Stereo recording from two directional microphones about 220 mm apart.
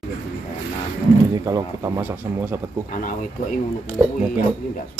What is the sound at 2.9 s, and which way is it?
Speech, 35° left (ahead or behind).